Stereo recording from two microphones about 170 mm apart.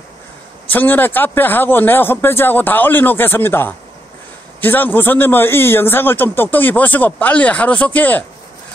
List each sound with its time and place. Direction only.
0.7 s a man's voice: 10° left (ahead or behind)